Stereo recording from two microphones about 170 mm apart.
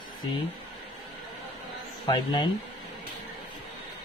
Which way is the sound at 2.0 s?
30° left (ahead or behind).